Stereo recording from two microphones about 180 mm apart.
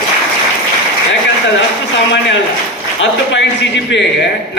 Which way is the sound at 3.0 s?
90° left.